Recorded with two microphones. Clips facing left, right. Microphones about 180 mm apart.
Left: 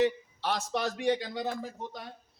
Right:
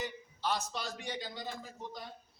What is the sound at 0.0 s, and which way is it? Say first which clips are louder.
A man's voice: left 10 dB; 70° left (ahead or behind).